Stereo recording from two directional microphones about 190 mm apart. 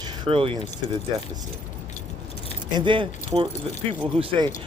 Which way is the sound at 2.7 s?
25° right (ahead or behind).